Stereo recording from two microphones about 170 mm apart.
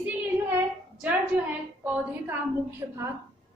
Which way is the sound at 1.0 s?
10° right (ahead or behind).